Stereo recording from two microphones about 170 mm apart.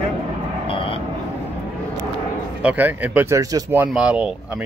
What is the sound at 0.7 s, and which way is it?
Vehicle, 30° left (ahead or behind).